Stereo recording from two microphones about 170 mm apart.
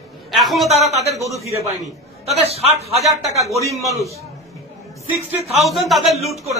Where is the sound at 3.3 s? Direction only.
20° right (ahead or behind).